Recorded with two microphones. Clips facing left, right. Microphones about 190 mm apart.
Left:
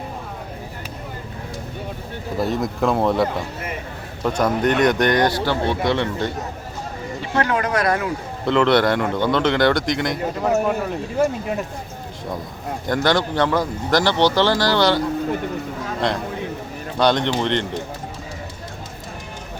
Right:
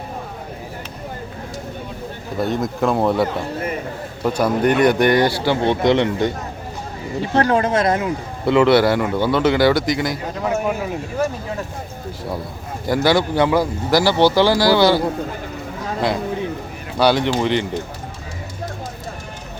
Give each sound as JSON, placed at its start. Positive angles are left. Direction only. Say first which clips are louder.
{"t": 2.4, "sound": "a man's voice", "louder": "right 1 dB", "side_deg": 0}
{"t": 5.6, "sound": "speech", "louder": "right 8 dB", "side_deg": -20}
{"t": 7.3, "sound": "speech", "louder": "right 4 dB", "side_deg": -30}
{"t": 8.4, "sound": "a man's voice", "louder": "right 3 dB", "side_deg": -10}
{"t": 12.8, "sound": "speech", "louder": "right 3 dB", "side_deg": -10}
{"t": 17.0, "sound": "speech", "louder": "right 2 dB", "side_deg": -5}